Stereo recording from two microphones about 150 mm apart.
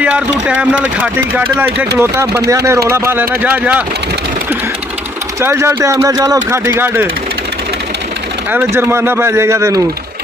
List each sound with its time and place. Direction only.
0.0 s speech: 10° right (ahead or behind)
5.4 s speech: 15° right (ahead or behind)
8.5 s speech: 10° right (ahead or behind)